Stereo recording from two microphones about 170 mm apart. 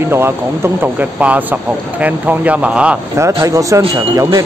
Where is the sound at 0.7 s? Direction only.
10° right (ahead or behind).